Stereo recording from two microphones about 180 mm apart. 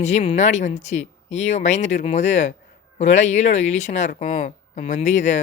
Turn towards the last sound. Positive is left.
turn(degrees=40)  # may be behind; listen again after turning